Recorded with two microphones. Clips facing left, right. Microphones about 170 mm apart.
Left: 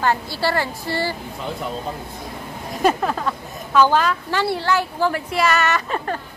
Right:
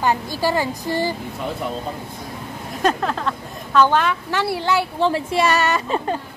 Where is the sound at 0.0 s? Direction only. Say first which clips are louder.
Right 1 dB; 15° right (ahead or behind).